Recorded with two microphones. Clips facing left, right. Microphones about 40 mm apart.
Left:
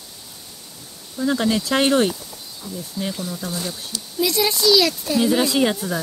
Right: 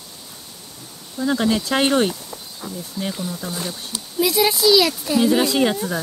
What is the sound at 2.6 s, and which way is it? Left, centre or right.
Speech, right.